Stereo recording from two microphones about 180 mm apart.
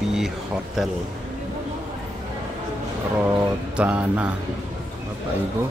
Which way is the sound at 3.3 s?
10° right (ahead or behind).